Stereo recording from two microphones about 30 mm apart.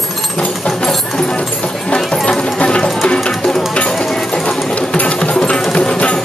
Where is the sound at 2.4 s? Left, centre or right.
Left.